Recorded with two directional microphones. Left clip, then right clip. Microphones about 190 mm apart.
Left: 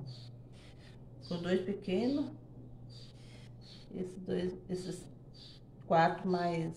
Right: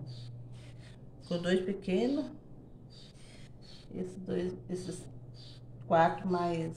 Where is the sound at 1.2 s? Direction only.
30° right (ahead or behind).